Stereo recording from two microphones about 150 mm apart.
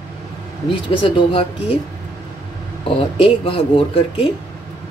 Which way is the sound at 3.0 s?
35° left (ahead or behind).